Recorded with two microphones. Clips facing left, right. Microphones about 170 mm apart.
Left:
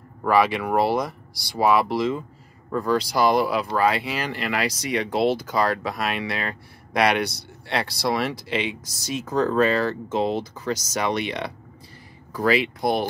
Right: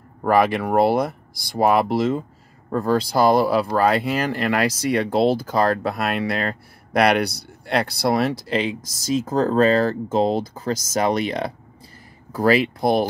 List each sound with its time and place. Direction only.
0.3 s speech: 45° right (ahead or behind)
7.7 s speech: 55° right (ahead or behind)
8.1 s speech: 40° right (ahead or behind)
8.8 s speech: 90° right
9.1 s speech: 35° right (ahead or behind)